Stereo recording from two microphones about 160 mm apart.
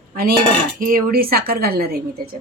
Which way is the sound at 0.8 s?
60° right (ahead or behind).